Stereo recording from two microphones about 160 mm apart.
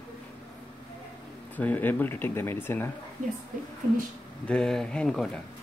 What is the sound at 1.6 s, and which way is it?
Speech, 10° left (ahead or behind).